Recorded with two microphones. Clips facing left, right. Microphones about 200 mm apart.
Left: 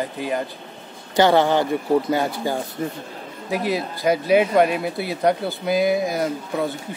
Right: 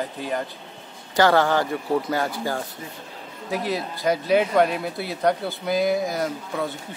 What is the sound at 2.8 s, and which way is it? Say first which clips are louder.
Speech: left 11 dB; 55° left (ahead or behind).